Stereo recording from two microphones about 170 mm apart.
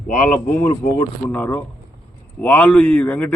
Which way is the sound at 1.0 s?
10° left (ahead or behind).